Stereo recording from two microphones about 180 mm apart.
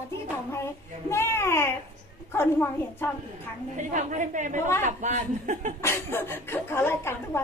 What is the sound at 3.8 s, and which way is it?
A woman's voice, 45° right (ahead or behind).